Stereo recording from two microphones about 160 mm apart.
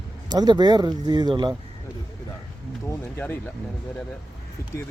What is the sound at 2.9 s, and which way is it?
Speech, 15° left (ahead or behind).